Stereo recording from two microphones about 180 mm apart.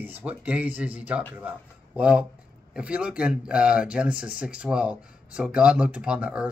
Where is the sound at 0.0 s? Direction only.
10° right (ahead or behind).